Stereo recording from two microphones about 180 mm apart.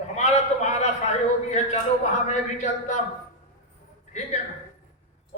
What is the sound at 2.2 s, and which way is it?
Speech, 40° left (ahead or behind).